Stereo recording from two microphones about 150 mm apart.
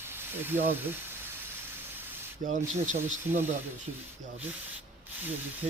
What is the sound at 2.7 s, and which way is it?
Speech, 55° right (ahead or behind).